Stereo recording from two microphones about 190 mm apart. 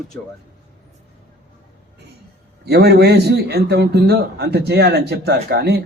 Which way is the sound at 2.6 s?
60° right (ahead or behind).